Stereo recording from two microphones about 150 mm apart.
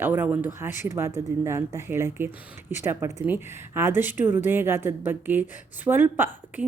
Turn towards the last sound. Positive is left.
turn(degrees=-15)  # may be behind; listen again after turning